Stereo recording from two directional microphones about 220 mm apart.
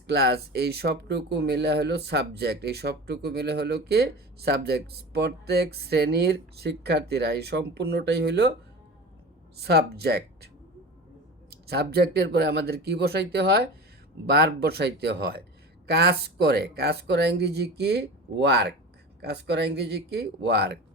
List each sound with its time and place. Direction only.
0.1 s speech: 45° right (ahead or behind)
9.6 s speech: 45° right (ahead or behind)
11.6 s speech: 45° right (ahead or behind)